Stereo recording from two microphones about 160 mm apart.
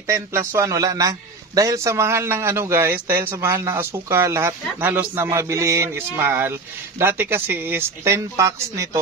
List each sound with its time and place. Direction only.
0.0 s a man's voice: 15° right (ahead or behind)